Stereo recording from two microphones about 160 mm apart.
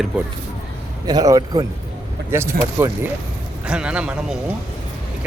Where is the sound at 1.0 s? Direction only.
25° right (ahead or behind).